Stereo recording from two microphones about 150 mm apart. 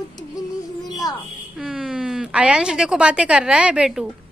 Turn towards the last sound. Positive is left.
turn(degrees=-5)  # may be behind; listen again after turning